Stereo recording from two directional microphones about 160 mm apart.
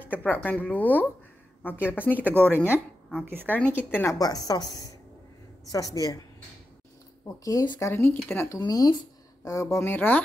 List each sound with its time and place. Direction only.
0.0 s a woman's voice: 10° left (ahead or behind)
5.7 s speech: 20° left (ahead or behind)
7.4 s speech: 25° left (ahead or behind)
7.9 s a woman's voice: 15° left (ahead or behind)